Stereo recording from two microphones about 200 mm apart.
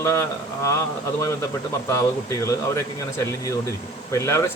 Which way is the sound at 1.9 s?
15° left (ahead or behind).